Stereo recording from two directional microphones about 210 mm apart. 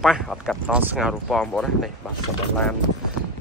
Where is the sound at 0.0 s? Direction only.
Centre (ahead or behind).